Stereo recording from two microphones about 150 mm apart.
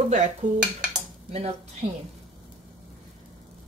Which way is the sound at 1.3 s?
45° right (ahead or behind).